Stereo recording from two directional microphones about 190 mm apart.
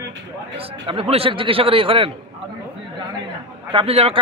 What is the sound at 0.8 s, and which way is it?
A man's voice, 30° right (ahead or behind).